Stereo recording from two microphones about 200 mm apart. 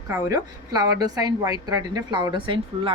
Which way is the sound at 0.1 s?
15° right (ahead or behind).